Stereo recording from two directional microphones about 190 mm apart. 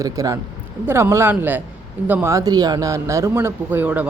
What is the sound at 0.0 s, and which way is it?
Speech, 20° right (ahead or behind).